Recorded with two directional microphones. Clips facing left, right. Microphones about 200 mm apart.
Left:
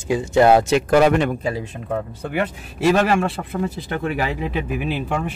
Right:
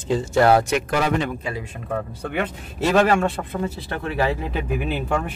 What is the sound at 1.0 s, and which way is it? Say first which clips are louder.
Speech: left 6 dB; 60° left (ahead or behind).